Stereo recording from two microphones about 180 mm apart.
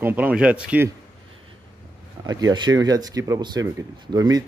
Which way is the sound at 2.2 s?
20° right (ahead or behind).